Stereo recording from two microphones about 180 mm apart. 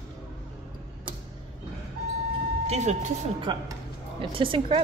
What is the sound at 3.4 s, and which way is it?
A woman's voice, 25° right (ahead or behind).